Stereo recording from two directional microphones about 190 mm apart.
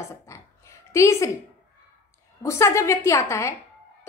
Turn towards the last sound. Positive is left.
turn(degrees=15)  # may be behind; listen again after turning